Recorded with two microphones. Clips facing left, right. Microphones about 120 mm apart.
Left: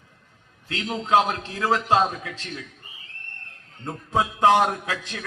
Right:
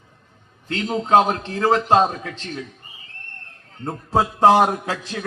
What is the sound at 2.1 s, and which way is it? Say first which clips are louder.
Speech: right 3 dB; 40° right (ahead or behind).